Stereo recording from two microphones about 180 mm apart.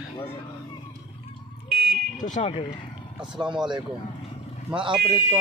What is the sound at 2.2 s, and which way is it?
Speech, 40° left (ahead or behind).